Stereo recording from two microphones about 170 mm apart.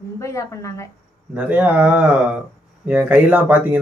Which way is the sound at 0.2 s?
15° left (ahead or behind).